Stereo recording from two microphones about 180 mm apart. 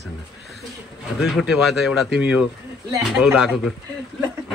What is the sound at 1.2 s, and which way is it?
Speech, centre (ahead or behind).